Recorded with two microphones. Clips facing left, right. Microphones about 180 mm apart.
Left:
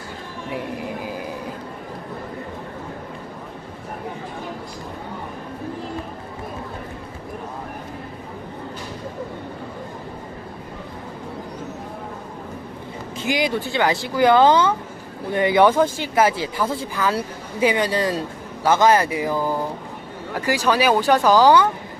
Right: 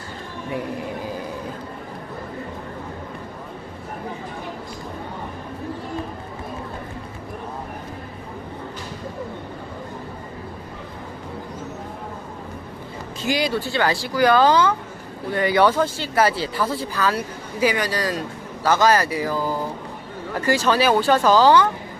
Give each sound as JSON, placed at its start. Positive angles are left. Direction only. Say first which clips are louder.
{"t": 13.1, "sound": "speech", "louder": "even", "side_deg": 20}